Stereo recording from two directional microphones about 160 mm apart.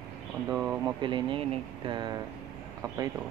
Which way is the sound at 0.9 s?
30° right (ahead or behind).